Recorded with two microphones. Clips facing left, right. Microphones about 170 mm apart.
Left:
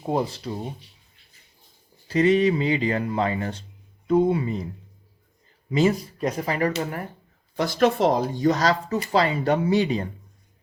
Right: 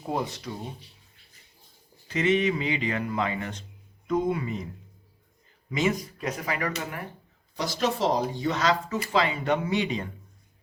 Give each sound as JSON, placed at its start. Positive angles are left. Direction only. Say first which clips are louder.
{"t": 0.0, "sound": "speech", "louder": "left 5 dB", "side_deg": 30}
{"t": 2.0, "sound": "speech", "louder": "left 5 dB", "side_deg": 35}
{"t": 5.7, "sound": "speech", "louder": "left 5 dB", "side_deg": 35}
{"t": 7.5, "sound": "speech", "louder": "left 7 dB", "side_deg": 55}